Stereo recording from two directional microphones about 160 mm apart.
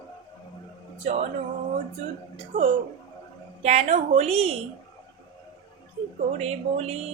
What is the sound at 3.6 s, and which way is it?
Speech, 45° right (ahead or behind).